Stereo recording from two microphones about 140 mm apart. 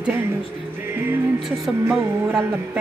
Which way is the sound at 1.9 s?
20° right (ahead or behind).